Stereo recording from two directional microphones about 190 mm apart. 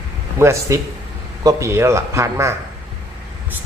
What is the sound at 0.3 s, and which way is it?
Speech, 15° right (ahead or behind).